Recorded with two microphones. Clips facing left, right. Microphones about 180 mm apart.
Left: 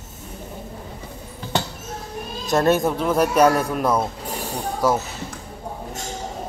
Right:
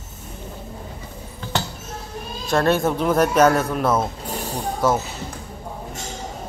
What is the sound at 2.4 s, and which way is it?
Speech, 20° left (ahead or behind).